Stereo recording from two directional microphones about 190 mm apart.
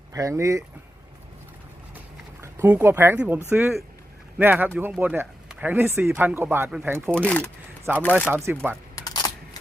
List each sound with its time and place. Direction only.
0.1 s speech: 15° right (ahead or behind)
2.4 s speech: 15° right (ahead or behind)
7.2 s speech: 5° left (ahead or behind)
7.9 s speech: 10° right (ahead or behind)
9.0 s a sound: 20° left (ahead or behind)